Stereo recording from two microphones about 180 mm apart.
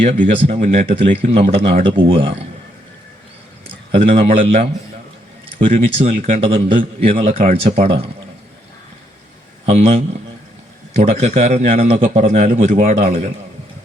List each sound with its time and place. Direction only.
0.4 s a man's voice: 35° right (ahead or behind)
3.9 s a man's voice: 35° right (ahead or behind)
9.6 s a man's voice: 35° right (ahead or behind)